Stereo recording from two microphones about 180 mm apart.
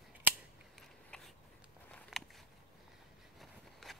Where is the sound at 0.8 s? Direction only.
Centre (ahead or behind).